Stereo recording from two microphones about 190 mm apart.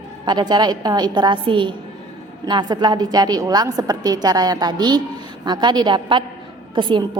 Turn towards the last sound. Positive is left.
turn(degrees=-25)  # may be behind; listen again after turning